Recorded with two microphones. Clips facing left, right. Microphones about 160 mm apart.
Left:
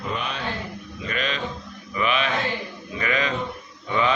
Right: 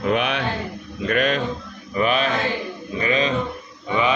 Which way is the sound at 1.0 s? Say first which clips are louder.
Right 8 dB; 55° right (ahead or behind).